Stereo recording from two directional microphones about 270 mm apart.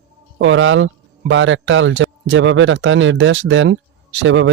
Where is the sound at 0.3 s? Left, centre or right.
Right.